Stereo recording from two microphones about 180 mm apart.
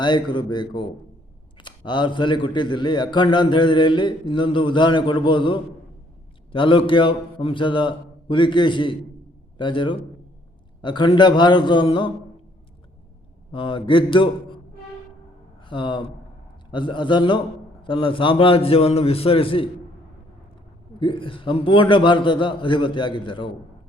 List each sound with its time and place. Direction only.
0.0 s a man's voice: 25° left (ahead or behind)
13.5 s a man's voice: 30° left (ahead or behind)
15.6 s a man's voice: 25° left (ahead or behind)
21.0 s a man's voice: 30° left (ahead or behind)